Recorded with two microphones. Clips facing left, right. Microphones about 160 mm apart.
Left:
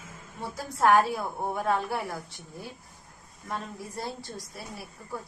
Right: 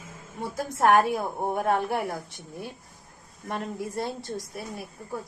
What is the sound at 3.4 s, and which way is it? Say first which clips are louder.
Speech: right 5 dB; 70° right (ahead or behind).